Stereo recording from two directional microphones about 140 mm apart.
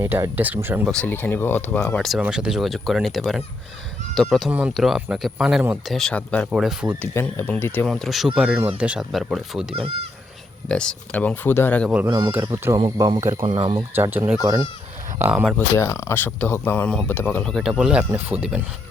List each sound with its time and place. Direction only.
0.0 s speech: 15° right (ahead or behind)
0.9 s speech: 10° left (ahead or behind); by 6.0 s 5° right (ahead or behind)
6.0 s speech: 5° left (ahead or behind)
6.5 s speech: 5° right (ahead or behind)
7.0 s speech: 20° left (ahead or behind)
7.9 s speech: centre (ahead or behind)
9.7 s speech: 40° right (ahead or behind)
10.7 s speech: 5° left (ahead or behind)
12.0 s speech: 30° right (ahead or behind)
12.3 s speech: 15° right (ahead or behind)
12.8 s speech: 30° right (ahead or behind)
13.4 s speech: 40° right (ahead or behind)
13.9 s speech: 15° right (ahead or behind)
15.7 s speech: 20° left (ahead or behind); by 18.6 s 10° right (ahead or behind)